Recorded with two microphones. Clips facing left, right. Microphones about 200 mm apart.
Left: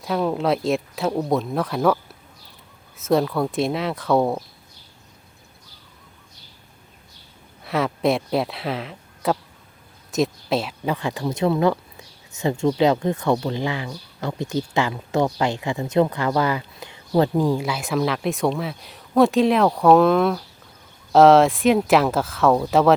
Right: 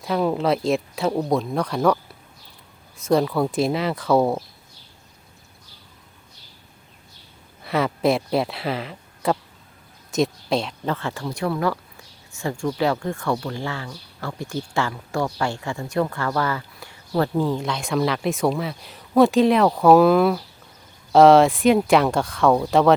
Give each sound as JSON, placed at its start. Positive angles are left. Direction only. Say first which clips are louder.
{"t": 0.0, "sound": "speech", "louder": "right 1 dB", "side_deg": 0}
{"t": 3.0, "sound": "speech", "louder": "even", "side_deg": 0}
{"t": 7.6, "sound": "speech", "louder": "right 1 dB", "side_deg": 0}